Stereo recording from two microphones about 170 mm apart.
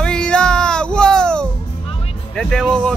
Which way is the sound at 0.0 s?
5° left (ahead or behind).